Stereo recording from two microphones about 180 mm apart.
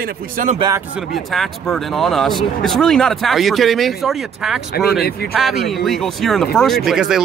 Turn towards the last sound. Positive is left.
turn(degrees=-5)  # may be behind; listen again after turning